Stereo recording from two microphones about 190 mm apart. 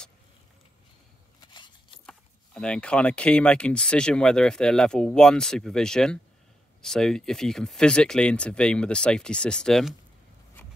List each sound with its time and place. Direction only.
1.4 s scissors: 25° left (ahead or behind)
2.0 s speech: 5° left (ahead or behind)